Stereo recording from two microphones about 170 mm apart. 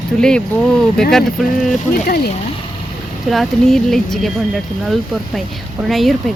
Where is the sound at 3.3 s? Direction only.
Centre (ahead or behind).